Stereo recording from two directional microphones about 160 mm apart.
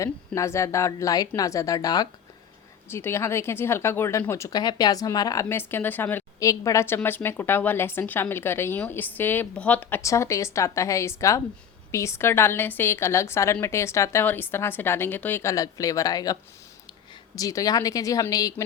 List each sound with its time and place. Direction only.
0.0 s a woman's voice: 20° left (ahead or behind)